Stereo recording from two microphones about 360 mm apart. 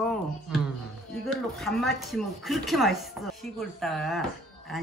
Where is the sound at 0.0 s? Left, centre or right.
Centre.